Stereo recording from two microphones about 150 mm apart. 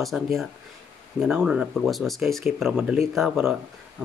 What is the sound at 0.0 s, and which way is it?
Speech, centre (ahead or behind).